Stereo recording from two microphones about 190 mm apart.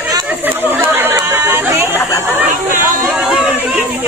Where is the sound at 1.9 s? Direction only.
10° left (ahead or behind).